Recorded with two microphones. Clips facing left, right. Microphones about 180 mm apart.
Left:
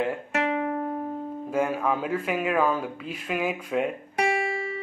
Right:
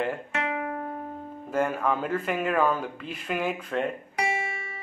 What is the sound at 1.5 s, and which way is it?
Speech, 5° left (ahead or behind).